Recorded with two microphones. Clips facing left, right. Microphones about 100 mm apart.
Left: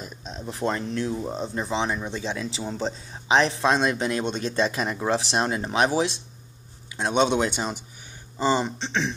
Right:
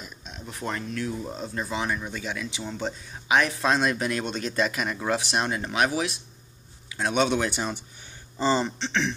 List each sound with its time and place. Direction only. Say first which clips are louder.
0.0 s speech: left 5 dB; 35° left (ahead or behind); by 9.1 s 20° left (ahead or behind)